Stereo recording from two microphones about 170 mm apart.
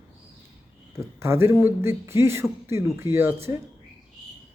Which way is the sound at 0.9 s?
15° right (ahead or behind).